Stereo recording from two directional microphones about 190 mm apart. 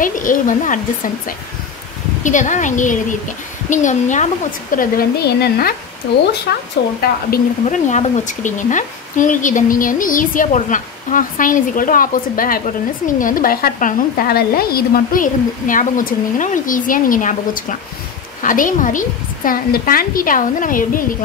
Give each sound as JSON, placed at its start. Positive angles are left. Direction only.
{"t": 0.0, "sound": "a woman's voice", "side_deg": 45}
{"t": 4.7, "sound": "speech", "side_deg": 55}
{"t": 7.6, "sound": "speech", "side_deg": 35}